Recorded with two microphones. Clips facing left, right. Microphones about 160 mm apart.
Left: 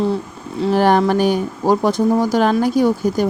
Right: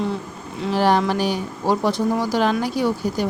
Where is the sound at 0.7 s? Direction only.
50° left (ahead or behind).